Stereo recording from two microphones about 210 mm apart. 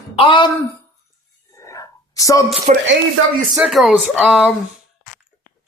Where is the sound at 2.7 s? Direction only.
35° right (ahead or behind).